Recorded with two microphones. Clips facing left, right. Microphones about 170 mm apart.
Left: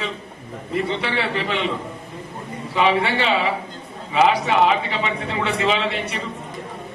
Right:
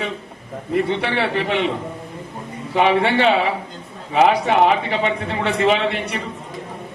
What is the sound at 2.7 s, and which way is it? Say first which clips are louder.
A man's voice: right 3 dB; 60° right (ahead or behind).